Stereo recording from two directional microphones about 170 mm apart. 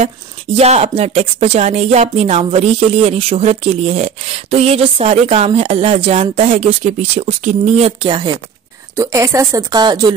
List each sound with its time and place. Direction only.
0.6 s speech: 40° right (ahead or behind)
8.9 s a woman's voice: 15° right (ahead or behind)